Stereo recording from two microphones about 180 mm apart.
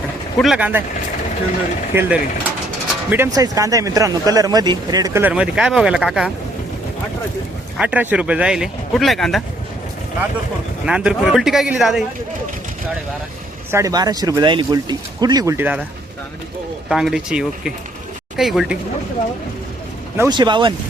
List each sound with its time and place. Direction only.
0.3 s speech: 5° right (ahead or behind)
2.0 s speech: 5° right (ahead or behind)
7.8 s speech: 5° right (ahead or behind)
10.8 s speech: 5° right (ahead or behind)
13.7 s speech: 15° right (ahead or behind)
16.9 s speech: centre (ahead or behind)
20.1 s speech: 20° right (ahead or behind)